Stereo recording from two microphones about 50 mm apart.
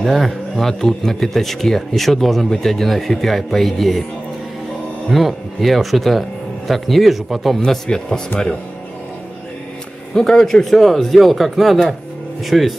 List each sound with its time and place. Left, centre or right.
0.0 s speech: centre
5.1 s speech: centre
10.1 s speech: centre